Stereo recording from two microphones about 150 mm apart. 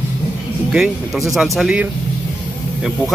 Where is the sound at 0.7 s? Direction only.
Centre (ahead or behind).